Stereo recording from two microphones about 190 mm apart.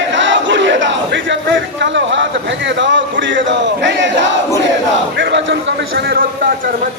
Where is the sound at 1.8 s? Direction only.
70° right (ahead or behind).